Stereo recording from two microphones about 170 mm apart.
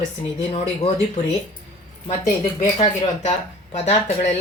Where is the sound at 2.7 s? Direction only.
40° left (ahead or behind).